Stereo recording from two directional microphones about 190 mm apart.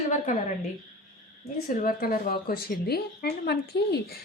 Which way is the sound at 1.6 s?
50° left (ahead or behind).